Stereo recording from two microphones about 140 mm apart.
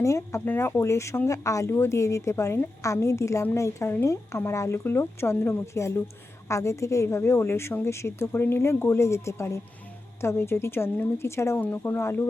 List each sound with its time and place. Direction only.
0.0 s speech: 20° left (ahead or behind)